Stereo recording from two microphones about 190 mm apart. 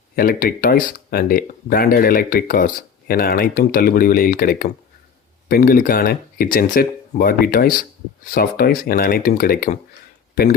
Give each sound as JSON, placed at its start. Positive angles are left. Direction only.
{"t": 0.2, "sound": "speech", "side_deg": 50}